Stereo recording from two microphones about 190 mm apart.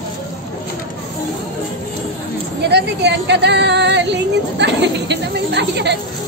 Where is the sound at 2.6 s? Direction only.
60° right (ahead or behind).